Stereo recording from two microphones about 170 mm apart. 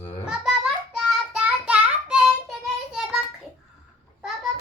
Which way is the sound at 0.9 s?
5° right (ahead or behind).